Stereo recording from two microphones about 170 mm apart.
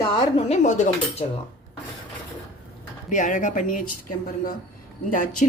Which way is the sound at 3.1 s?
50° left (ahead or behind).